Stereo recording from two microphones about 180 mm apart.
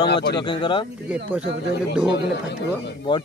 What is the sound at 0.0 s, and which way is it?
Speech, 70° left (ahead or behind).